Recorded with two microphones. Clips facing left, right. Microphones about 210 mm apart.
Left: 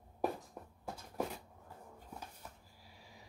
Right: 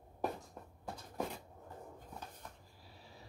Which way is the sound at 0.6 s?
10° left (ahead or behind).